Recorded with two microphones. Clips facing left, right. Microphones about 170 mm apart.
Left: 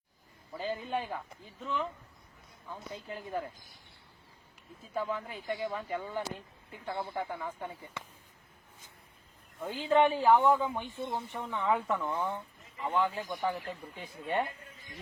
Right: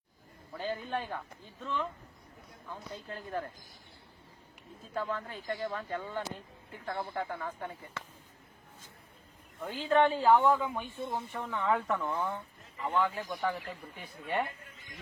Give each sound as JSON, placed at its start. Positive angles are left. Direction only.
{"t": 0.5, "sound": "speech", "side_deg": 5}
{"t": 3.1, "sound": "speech", "side_deg": 5}
{"t": 4.9, "sound": "speech", "side_deg": 10}
{"t": 9.6, "sound": "speech", "side_deg": 15}